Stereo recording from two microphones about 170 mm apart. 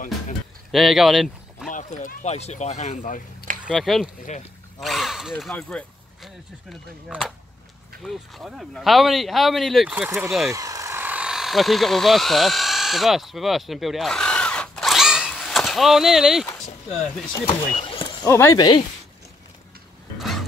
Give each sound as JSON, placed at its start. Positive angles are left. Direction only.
{"t": 0.7, "sound": "speech", "side_deg": 0}
{"t": 1.7, "sound": "speech", "side_deg": 45}
{"t": 3.7, "sound": "speech", "side_deg": 0}
{"t": 10.5, "sound": "a sound", "side_deg": -20}
{"t": 17.3, "sound": "speech", "side_deg": 30}